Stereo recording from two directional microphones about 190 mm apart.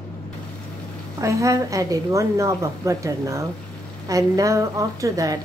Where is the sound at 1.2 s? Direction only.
15° right (ahead or behind).